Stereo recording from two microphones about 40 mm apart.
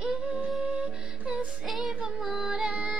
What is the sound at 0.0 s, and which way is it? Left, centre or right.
Music, right.